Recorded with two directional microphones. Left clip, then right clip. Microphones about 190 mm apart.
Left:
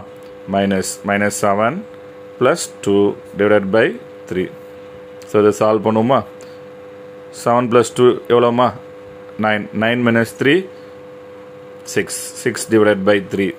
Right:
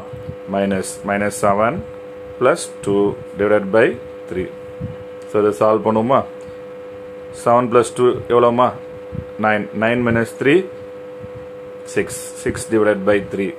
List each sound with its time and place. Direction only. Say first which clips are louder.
0.5 s speech: left 2 dB; 30° left (ahead or behind)
7.4 s speech: even; 30° left (ahead or behind)
11.9 s speech: left 1 dB; 30° left (ahead or behind)